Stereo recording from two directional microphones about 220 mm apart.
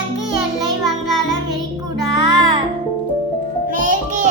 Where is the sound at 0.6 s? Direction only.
Centre (ahead or behind).